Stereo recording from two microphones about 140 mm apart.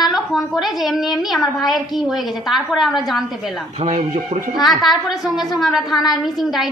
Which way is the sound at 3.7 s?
55° right (ahead or behind).